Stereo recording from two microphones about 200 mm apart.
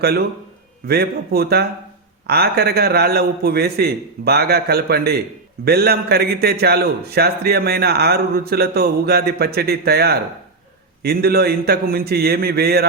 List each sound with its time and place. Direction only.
0.9 s a man's voice: 50° right (ahead or behind)